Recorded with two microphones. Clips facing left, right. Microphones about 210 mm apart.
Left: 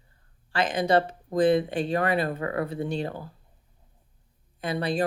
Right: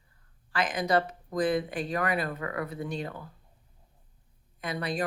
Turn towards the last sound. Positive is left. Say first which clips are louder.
# left 5 dB
turn(degrees=30)  # may be behind; listen again after turning